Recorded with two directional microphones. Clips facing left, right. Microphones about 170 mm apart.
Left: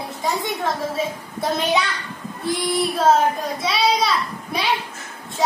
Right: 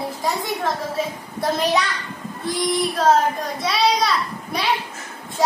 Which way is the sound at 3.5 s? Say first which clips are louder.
Right 2 dB; centre (ahead or behind).